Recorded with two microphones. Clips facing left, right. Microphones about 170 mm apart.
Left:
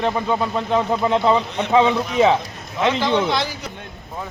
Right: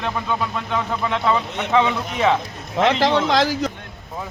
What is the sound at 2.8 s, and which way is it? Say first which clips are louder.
Speech: right 1 dB; 90° right.